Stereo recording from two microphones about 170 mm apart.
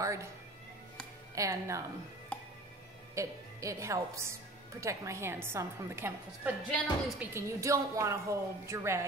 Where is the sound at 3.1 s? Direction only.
20° right (ahead or behind).